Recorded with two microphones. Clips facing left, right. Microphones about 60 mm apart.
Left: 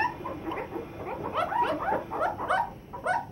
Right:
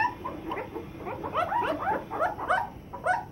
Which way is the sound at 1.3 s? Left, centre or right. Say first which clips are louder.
Even; centre.